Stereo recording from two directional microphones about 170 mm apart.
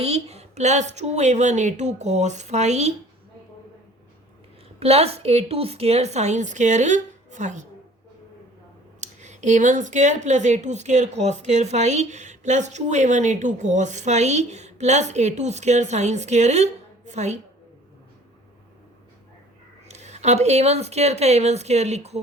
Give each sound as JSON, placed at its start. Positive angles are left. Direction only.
{"t": 0.0, "sound": "speech", "side_deg": -40}
{"t": 4.8, "sound": "a woman's voice", "side_deg": -35}
{"t": 9.0, "sound": "a woman's voice", "side_deg": -45}
{"t": 19.9, "sound": "a woman's voice", "side_deg": -40}